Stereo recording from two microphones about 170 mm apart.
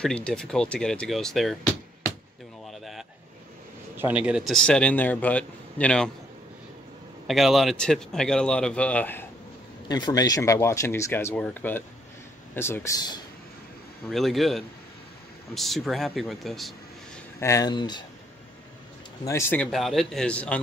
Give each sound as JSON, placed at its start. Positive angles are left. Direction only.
{"t": 0.0, "sound": "speech", "side_deg": 5}
{"t": 2.6, "sound": "a sound", "side_deg": 0}
{"t": 3.9, "sound": "speech", "side_deg": -10}
{"t": 7.2, "sound": "speech", "side_deg": 0}
{"t": 9.8, "sound": "speech", "side_deg": 25}
{"t": 14.0, "sound": "speech", "side_deg": 0}
{"t": 17.4, "sound": "speech", "side_deg": 20}
{"t": 19.2, "sound": "speech", "side_deg": 15}